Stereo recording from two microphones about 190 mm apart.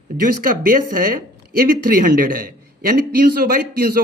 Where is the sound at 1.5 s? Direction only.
50° right (ahead or behind).